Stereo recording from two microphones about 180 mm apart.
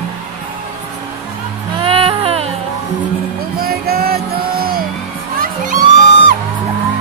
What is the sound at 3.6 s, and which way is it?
Music, 55° right (ahead or behind).